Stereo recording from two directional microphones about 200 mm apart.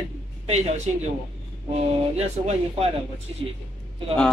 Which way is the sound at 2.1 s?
30° right (ahead or behind).